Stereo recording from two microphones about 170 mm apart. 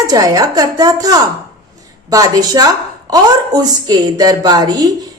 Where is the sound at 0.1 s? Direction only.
20° right (ahead or behind).